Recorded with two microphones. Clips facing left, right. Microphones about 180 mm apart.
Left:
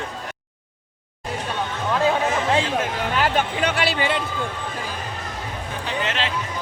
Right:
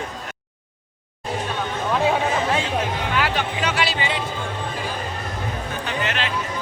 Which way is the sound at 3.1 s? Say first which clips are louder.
Left 4 dB; 45° left (ahead or behind).